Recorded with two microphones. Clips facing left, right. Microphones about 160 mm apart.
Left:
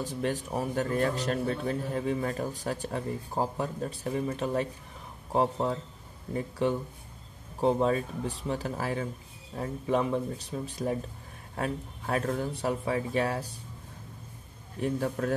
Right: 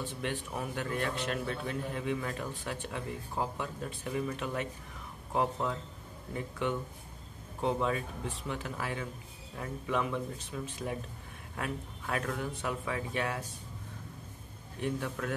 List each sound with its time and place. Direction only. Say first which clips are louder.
0.0 s a man's voice: left 5 dB; 40° left (ahead or behind)
14.8 s a man's voice: left 5 dB; 40° left (ahead or behind)